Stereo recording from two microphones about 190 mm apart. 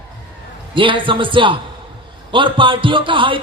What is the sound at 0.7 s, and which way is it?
A man's voice, 25° right (ahead or behind).